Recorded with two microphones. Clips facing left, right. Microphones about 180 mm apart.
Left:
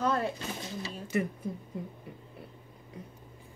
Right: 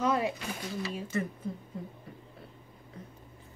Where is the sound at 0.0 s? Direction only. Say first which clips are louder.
Right 1 dB; 5° right (ahead or behind).